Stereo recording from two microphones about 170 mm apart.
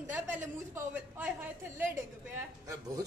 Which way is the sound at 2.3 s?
20° right (ahead or behind).